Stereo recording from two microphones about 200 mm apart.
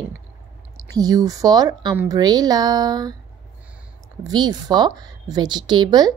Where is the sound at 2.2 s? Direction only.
20° right (ahead or behind).